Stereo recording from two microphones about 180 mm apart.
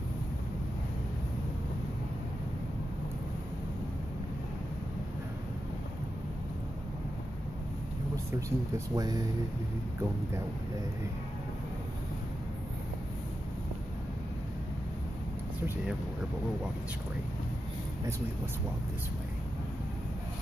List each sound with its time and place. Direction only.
8.4 s speech: 15° right (ahead or behind)